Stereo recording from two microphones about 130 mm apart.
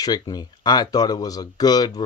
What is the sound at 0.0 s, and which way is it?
Speech, 30° left (ahead or behind).